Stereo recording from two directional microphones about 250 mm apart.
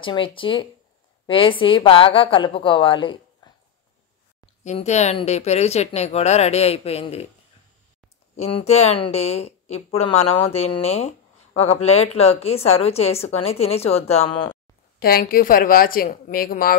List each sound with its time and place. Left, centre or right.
0.0 s a woman's voice: centre
3.4 s a sound: centre
4.6 s a woman's voice: left
8.4 s a woman's voice: left
15.0 s a woman's voice: left